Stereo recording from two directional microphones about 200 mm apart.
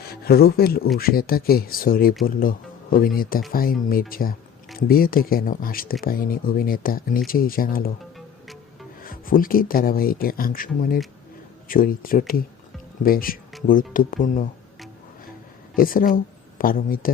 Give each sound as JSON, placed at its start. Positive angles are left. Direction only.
{"t": 0.0, "sound": "speech", "side_deg": 50}
{"t": 9.0, "sound": "speech", "side_deg": 45}
{"t": 15.7, "sound": "speech", "side_deg": 45}